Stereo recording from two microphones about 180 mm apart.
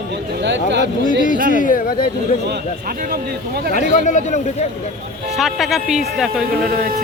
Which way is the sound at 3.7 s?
45° left (ahead or behind).